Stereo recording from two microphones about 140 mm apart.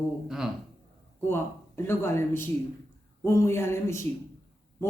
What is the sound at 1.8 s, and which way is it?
Speech, 15° left (ahead or behind).